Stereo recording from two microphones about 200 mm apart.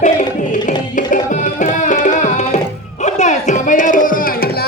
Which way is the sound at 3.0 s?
35° left (ahead or behind).